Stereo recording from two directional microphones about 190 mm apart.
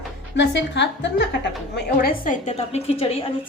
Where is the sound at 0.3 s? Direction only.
65° left (ahead or behind).